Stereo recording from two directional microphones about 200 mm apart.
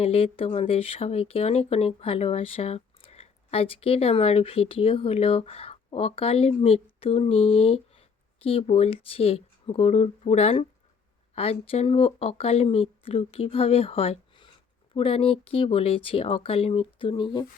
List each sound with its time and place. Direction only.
0.0 s speech: 30° left (ahead or behind)